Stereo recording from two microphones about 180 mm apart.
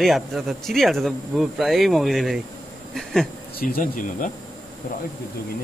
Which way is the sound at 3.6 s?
55° left (ahead or behind).